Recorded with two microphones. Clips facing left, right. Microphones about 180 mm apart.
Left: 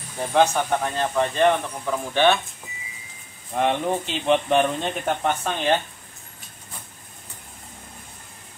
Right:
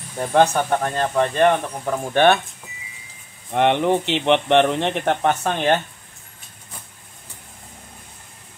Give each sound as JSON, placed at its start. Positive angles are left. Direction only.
{"t": 0.3, "sound": "speech", "side_deg": -50}
{"t": 3.5, "sound": "speech", "side_deg": -70}